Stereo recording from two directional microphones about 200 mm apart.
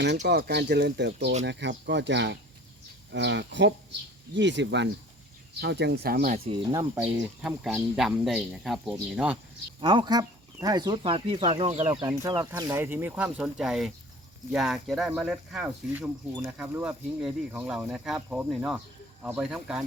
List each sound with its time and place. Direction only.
0.3 s speech: 55° right (ahead or behind)
6.3 s speech: 25° right (ahead or behind)
6.9 s speech: 5° right (ahead or behind)
9.8 s speech: 25° right (ahead or behind)
11.9 s speech: 20° right (ahead or behind); by 19.8 s 5° right (ahead or behind)